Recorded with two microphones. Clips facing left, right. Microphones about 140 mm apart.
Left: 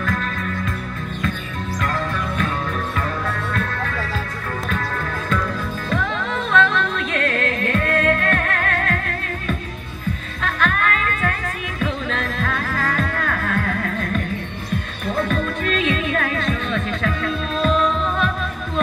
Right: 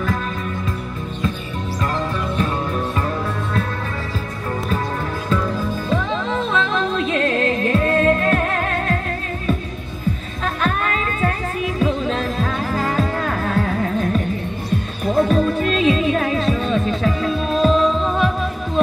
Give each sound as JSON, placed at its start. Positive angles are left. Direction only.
{"t": 5.9, "sound": "music", "side_deg": -30}
{"t": 10.4, "sound": "music", "side_deg": -35}